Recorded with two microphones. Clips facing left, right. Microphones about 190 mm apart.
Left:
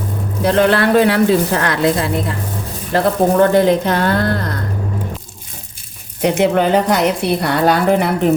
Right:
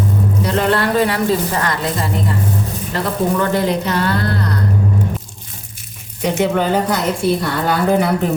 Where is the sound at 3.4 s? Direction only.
55° left (ahead or behind).